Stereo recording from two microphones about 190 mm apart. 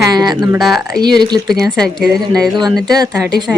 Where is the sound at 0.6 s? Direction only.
Centre (ahead or behind).